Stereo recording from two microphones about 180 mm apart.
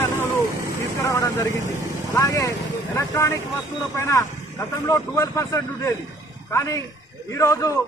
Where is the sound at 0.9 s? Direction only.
20° left (ahead or behind).